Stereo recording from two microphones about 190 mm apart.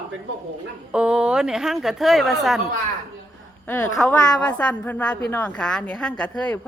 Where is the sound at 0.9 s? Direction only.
5° right (ahead or behind).